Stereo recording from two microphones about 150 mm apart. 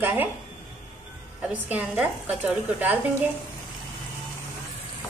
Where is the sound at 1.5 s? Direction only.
10° right (ahead or behind).